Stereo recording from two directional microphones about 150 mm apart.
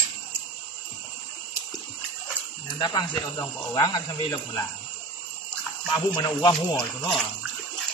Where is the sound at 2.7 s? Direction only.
25° left (ahead or behind).